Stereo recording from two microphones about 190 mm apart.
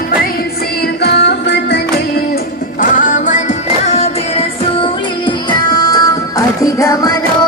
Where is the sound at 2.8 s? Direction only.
45° left (ahead or behind).